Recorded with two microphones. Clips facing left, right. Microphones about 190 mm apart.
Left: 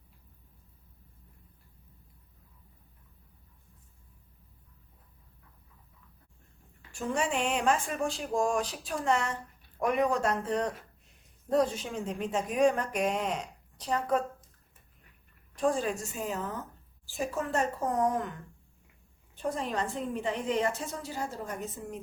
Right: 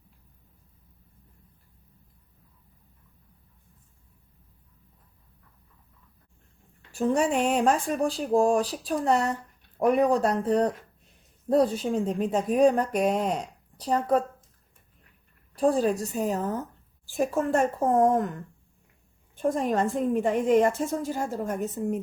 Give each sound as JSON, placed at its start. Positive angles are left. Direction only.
{"t": 6.9, "sound": "speech", "side_deg": -40}
{"t": 15.5, "sound": "speech", "side_deg": -35}
{"t": 17.1, "sound": "a woman's voice", "side_deg": -50}
{"t": 19.4, "sound": "a woman's voice", "side_deg": -50}